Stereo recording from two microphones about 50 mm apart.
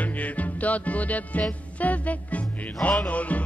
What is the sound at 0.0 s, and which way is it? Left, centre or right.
Music, left.